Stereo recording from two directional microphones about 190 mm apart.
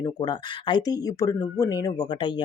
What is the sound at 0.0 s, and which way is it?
Speech, 20° left (ahead or behind).